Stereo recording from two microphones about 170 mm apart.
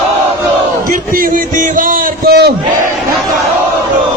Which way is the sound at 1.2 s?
50° right (ahead or behind).